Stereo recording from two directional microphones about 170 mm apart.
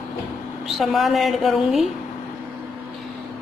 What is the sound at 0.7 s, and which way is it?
A woman's voice, centre (ahead or behind).